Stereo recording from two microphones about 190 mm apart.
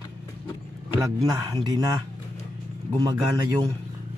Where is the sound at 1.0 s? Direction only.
20° right (ahead or behind).